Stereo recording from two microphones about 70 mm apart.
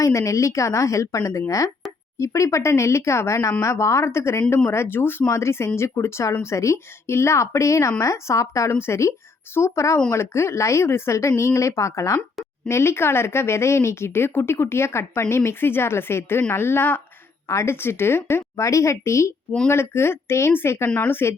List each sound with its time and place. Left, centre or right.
0.0 s speech: left